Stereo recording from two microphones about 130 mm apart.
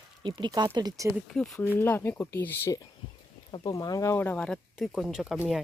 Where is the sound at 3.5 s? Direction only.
35° left (ahead or behind); by 5.4 s 5° right (ahead or behind).